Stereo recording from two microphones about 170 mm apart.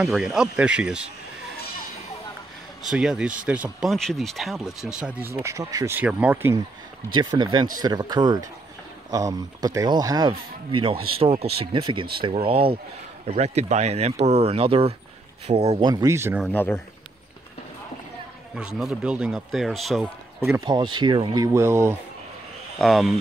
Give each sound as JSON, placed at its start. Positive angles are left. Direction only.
{"t": 0.0, "sound": "speech", "side_deg": 0}
{"t": 2.8, "sound": "speech", "side_deg": -5}
{"t": 5.3, "sound": "speech", "side_deg": -20}
{"t": 7.1, "sound": "speech", "side_deg": -25}
{"t": 15.9, "sound": "speech", "side_deg": -20}
{"t": 16.4, "sound": "speech", "side_deg": 10}
{"t": 18.5, "sound": "speech", "side_deg": -5}
{"t": 20.6, "sound": "speech", "side_deg": -25}
{"t": 22.8, "sound": "speech", "side_deg": 0}